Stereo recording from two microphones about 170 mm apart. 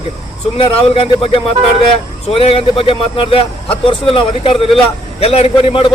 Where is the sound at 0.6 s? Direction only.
35° left (ahead or behind).